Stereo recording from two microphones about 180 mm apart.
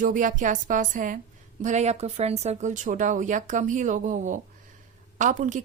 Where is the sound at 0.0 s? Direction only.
45° right (ahead or behind).